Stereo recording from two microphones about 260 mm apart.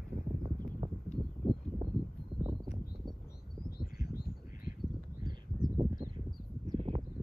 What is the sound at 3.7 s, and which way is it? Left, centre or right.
Bird, left.